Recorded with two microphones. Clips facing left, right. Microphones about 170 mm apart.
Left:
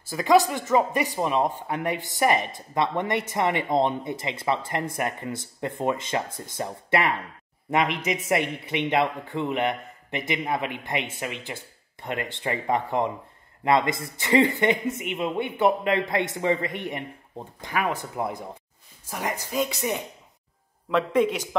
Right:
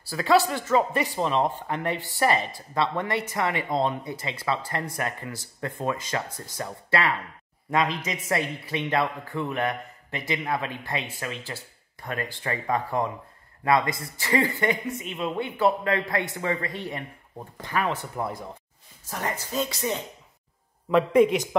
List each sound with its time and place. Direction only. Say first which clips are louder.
0.1 s a man's voice: left 2 dB; 15° left (ahead or behind)